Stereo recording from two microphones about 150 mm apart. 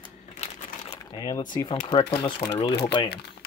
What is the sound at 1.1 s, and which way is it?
Speech, 25° left (ahead or behind).